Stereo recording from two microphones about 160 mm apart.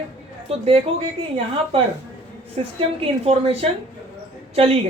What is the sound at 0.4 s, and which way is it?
Speech, 35° right (ahead or behind).